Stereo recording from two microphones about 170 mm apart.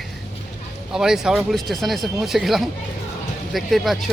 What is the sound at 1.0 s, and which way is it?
Speech, 5° right (ahead or behind).